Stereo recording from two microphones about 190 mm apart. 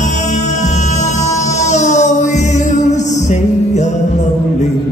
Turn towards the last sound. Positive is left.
turn(degrees=40)  # may be behind; listen again after turning